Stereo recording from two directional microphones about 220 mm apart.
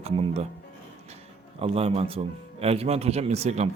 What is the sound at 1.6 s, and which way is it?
A man's voice, 25° right (ahead or behind).